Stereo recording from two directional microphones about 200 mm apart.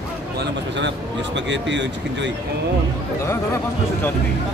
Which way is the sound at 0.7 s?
60° right (ahead or behind).